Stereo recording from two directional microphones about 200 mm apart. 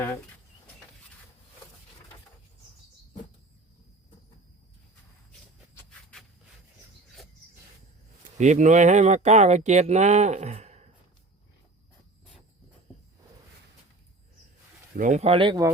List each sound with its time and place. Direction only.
5.7 s a sound: 5° left (ahead or behind)
8.4 s speech: 35° right (ahead or behind)
14.9 s speech: 35° right (ahead or behind); by 15.7 s 20° right (ahead or behind)